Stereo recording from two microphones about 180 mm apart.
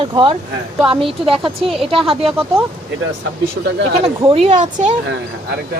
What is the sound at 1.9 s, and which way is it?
Speech, 30° right (ahead or behind).